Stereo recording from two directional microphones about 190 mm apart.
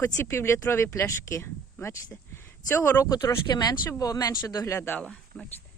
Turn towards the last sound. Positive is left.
turn(degrees=5)  # may be behind; listen again after turning